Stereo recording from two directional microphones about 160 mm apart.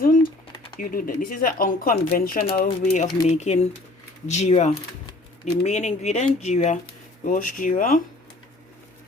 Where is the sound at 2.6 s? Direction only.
45° left (ahead or behind).